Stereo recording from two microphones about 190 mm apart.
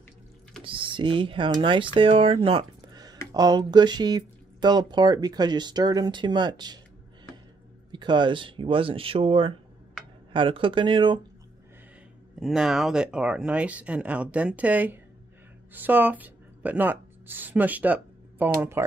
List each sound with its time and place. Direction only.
0.7 s speech: 25° right (ahead or behind)
7.9 s speech: 25° right (ahead or behind)
12.4 s speech: centre (ahead or behind)